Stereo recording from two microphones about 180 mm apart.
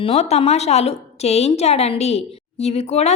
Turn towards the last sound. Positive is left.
turn(degrees=35)  # may be behind; listen again after turning